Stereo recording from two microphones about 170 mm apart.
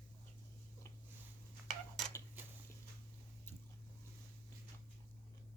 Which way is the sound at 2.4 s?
10° right (ahead or behind).